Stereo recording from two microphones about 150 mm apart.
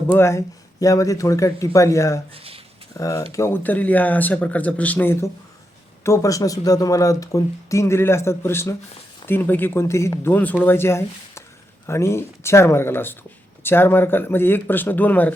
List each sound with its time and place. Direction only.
0.1 s speech: 15° left (ahead or behind)
2.3 s a sound: 40° right (ahead or behind)
3.0 s speech: 20° left (ahead or behind)